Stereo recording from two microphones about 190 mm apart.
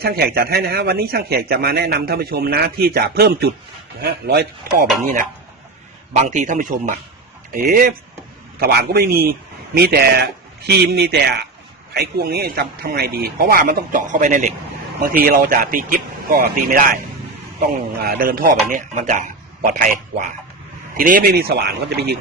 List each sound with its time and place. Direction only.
0.0 s speech: 55° right (ahead or behind)
6.2 s speech: 40° right (ahead or behind)
18.0 s speech: 50° right (ahead or behind)